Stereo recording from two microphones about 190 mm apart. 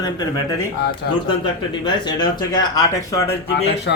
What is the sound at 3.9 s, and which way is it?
Speech, 65° left (ahead or behind).